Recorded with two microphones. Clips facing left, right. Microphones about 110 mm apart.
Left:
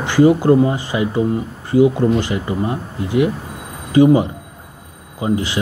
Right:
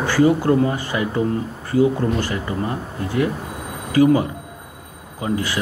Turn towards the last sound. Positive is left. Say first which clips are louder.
# left 3 dB
turn(degrees=20)  # may be behind; listen again after turning